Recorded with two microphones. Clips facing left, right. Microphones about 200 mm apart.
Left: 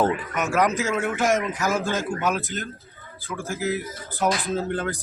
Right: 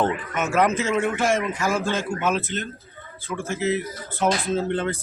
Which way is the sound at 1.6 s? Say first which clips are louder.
Even; 20° left (ahead or behind).